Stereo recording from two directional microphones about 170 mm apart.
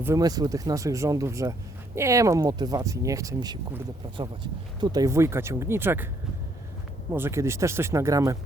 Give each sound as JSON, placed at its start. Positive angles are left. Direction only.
{"t": 0.0, "sound": "speech", "side_deg": -20}
{"t": 4.8, "sound": "speech", "side_deg": -25}
{"t": 7.1, "sound": "speech", "side_deg": -15}